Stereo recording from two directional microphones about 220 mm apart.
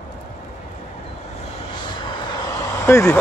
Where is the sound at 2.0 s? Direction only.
20° left (ahead or behind).